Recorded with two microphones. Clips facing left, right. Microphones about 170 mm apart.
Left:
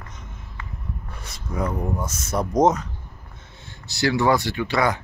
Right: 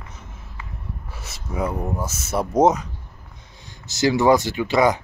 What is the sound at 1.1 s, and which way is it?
Speech, 5° right (ahead or behind).